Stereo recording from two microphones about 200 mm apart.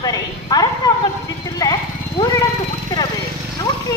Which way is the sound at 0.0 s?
20° left (ahead or behind).